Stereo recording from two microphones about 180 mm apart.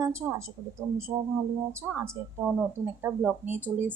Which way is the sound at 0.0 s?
15° right (ahead or behind).